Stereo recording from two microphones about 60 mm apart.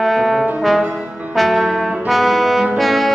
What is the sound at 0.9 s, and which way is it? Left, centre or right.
Brass instrument, centre.